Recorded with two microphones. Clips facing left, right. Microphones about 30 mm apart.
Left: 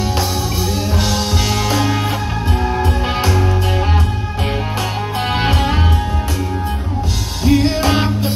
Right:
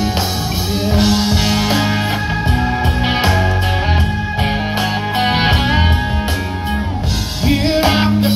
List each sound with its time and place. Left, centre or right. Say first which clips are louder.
0.8 s music: right 8 dB; right
3.1 s music: right 2 dB; right
5.2 s music: right 2 dB; right
7.4 s music: even; right